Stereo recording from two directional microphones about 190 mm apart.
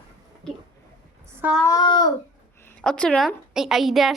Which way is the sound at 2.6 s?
5° left (ahead or behind).